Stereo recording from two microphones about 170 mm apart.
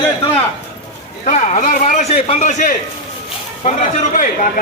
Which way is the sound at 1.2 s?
45° left (ahead or behind).